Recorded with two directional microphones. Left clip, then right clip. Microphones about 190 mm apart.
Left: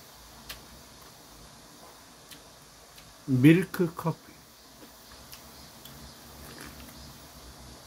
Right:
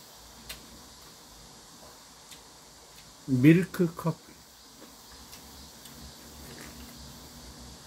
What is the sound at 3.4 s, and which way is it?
Speech, 45° left (ahead or behind).